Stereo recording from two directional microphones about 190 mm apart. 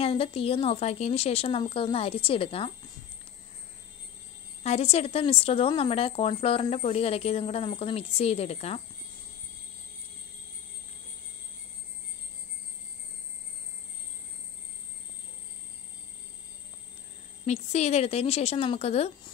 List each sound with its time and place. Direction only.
0.0 s speech: 30° left (ahead or behind)
4.6 s speech: 35° left (ahead or behind)
17.5 s speech: 35° left (ahead or behind)